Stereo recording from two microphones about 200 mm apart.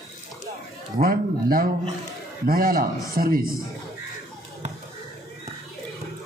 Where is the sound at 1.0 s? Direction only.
45° right (ahead or behind).